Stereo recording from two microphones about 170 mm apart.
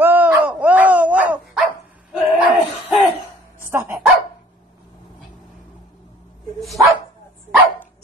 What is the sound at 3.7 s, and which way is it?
Speech, 15° right (ahead or behind).